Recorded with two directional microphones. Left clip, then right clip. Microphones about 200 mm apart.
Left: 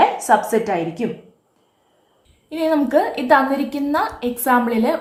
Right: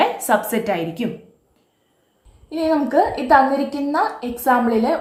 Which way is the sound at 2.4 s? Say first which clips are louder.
Left 1 dB; 50° left (ahead or behind).